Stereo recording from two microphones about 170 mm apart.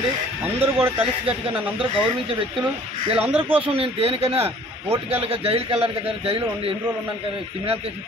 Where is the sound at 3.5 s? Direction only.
35° right (ahead or behind).